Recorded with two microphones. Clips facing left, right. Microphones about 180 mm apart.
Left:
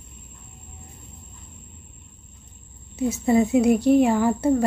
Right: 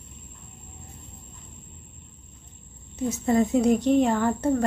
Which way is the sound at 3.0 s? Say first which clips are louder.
Left 3 dB; 10° left (ahead or behind).